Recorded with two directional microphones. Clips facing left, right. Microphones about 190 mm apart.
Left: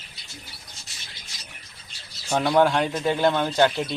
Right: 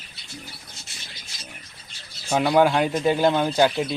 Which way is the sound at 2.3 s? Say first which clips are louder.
Right 1 dB; 5° right (ahead or behind).